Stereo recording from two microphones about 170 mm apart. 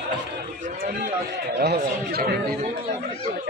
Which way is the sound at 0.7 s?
55° right (ahead or behind).